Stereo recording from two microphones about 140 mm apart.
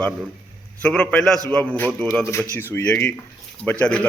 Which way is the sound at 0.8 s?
10° left (ahead or behind).